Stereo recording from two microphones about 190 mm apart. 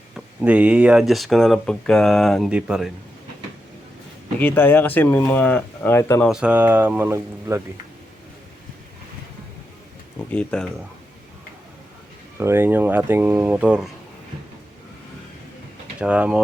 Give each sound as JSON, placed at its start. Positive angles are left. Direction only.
{"t": 0.4, "sound": "speech", "side_deg": -5}
{"t": 4.4, "sound": "speech", "side_deg": 10}
{"t": 6.2, "sound": "speech", "side_deg": -5}
{"t": 10.3, "sound": "speech", "side_deg": 5}
{"t": 12.4, "sound": "speech", "side_deg": -10}
{"t": 16.0, "sound": "speech", "side_deg": -5}